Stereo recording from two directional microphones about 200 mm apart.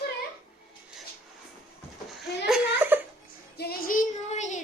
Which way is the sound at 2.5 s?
10° right (ahead or behind).